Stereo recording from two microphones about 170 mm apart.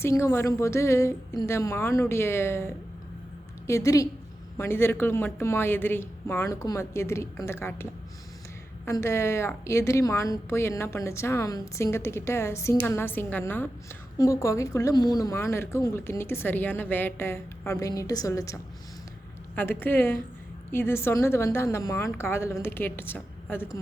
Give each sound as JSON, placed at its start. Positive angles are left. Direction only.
{"t": 0.0, "sound": "a woman's voice", "side_deg": 15}
{"t": 19.8, "sound": "a woman's voice", "side_deg": 10}